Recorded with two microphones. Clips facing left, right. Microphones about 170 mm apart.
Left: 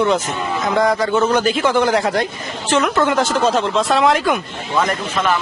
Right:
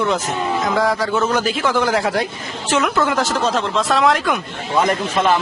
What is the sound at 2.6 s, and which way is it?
Music, 5° right (ahead or behind).